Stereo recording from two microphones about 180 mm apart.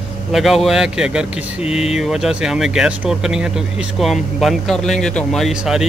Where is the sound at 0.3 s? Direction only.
Centre (ahead or behind).